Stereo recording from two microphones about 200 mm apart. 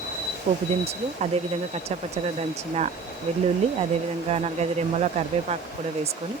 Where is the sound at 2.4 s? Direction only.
30° right (ahead or behind).